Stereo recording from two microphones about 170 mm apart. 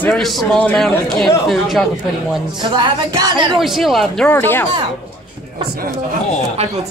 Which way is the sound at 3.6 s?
Centre (ahead or behind).